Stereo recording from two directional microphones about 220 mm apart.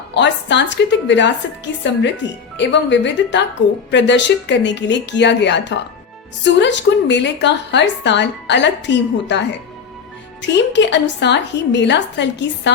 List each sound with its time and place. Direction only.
0.1 s a woman's voice: 55° left (ahead or behind)